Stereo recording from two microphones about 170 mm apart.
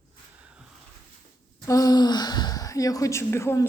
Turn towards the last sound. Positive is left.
turn(degrees=15)  # may be behind; listen again after turning